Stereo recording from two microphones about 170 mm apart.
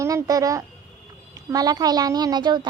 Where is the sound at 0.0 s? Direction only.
20° right (ahead or behind).